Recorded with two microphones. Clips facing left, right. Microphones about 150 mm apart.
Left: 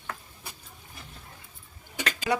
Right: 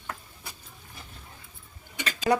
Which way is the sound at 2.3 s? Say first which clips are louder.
Right 4 dB; 45° right (ahead or behind).